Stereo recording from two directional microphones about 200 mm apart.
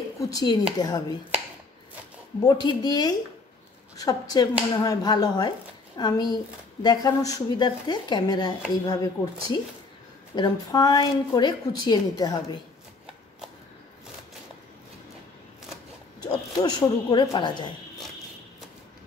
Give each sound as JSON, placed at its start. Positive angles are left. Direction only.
{"t": 0.2, "sound": "a woman's voice", "side_deg": 20}
{"t": 2.4, "sound": "a woman's voice", "side_deg": 20}
{"t": 16.2, "sound": "speech", "side_deg": 20}